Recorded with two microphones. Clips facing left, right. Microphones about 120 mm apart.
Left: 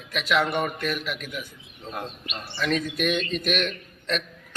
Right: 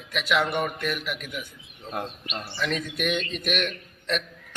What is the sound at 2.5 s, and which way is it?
A man's voice, 15° right (ahead or behind).